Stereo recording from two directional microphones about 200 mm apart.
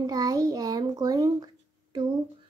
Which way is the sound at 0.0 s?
20° right (ahead or behind).